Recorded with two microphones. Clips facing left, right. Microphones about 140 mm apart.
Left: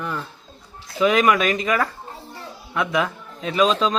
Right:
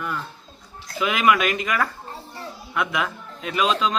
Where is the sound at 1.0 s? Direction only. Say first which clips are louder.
Left 3 dB; 35° left (ahead or behind).